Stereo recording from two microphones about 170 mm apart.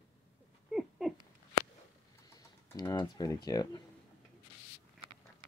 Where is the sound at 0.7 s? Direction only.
Centre (ahead or behind).